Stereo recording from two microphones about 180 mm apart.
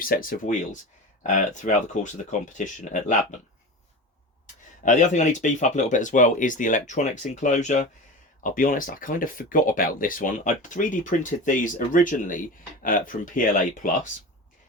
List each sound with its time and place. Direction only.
0.1 s speech: 50° left (ahead or behind)
4.9 s speech: 45° left (ahead or behind)